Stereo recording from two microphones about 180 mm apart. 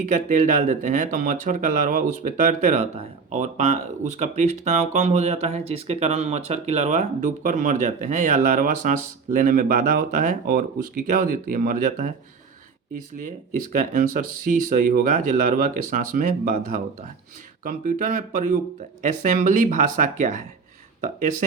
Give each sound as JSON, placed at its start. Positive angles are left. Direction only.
{"t": 0.1, "sound": "speech", "side_deg": -45}
{"t": 9.7, "sound": "speech", "side_deg": -55}